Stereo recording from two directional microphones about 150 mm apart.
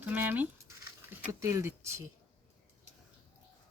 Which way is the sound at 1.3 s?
20° right (ahead or behind).